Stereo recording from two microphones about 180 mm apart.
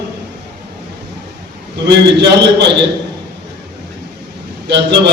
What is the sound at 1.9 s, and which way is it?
Speech, 70° right (ahead or behind).